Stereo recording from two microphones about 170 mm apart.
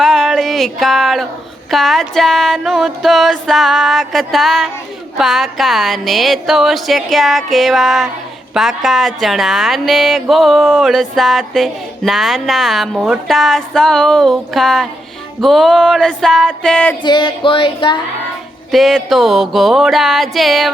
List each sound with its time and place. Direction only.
0.0 s a sound: centre (ahead or behind)
1.7 s speech: centre (ahead or behind)
17.0 s music: 25° left (ahead or behind)
18.7 s speech: centre (ahead or behind)